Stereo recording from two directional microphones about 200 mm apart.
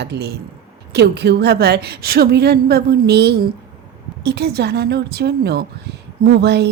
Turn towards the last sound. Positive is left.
turn(degrees=-55)  # may be behind; listen again after turning